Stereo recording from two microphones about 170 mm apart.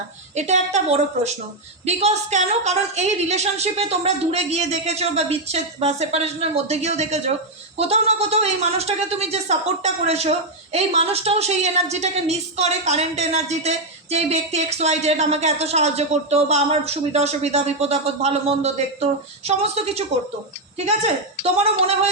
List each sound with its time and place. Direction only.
0.3 s a woman's voice: 40° right (ahead or behind)